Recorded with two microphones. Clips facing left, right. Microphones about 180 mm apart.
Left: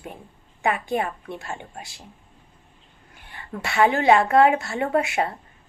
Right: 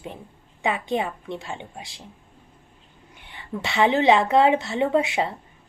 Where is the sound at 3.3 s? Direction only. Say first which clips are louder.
Left 1 dB; 20° right (ahead or behind).